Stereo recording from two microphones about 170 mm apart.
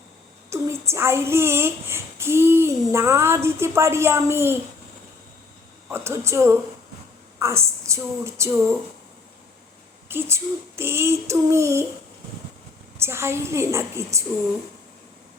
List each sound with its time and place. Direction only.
0.5 s speech: 15° right (ahead or behind)
5.9 s child singing: 15° right (ahead or behind)
7.3 s a woman's voice: 15° right (ahead or behind)
10.1 s child singing: 15° right (ahead or behind)
13.0 s child singing: 15° right (ahead or behind)